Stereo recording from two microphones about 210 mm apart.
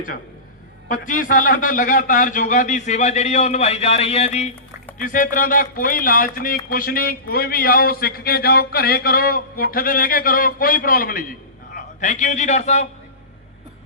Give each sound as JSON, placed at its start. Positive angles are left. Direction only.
{"t": 0.9, "sound": "a man's voice", "side_deg": 40}